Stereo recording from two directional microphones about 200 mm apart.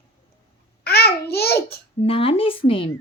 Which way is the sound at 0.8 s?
50° left (ahead or behind).